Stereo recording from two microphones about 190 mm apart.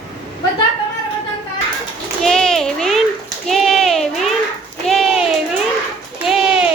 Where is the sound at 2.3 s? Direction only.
5° left (ahead or behind).